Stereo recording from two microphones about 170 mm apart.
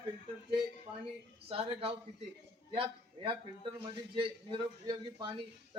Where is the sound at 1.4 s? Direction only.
35° right (ahead or behind).